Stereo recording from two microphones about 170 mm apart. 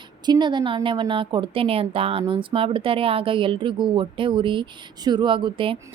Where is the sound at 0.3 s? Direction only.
25° right (ahead or behind).